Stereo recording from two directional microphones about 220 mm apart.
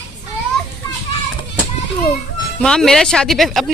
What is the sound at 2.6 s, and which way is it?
Speech, centre (ahead or behind).